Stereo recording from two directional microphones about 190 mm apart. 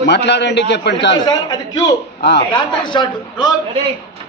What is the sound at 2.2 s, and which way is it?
Speech, 65° left (ahead or behind).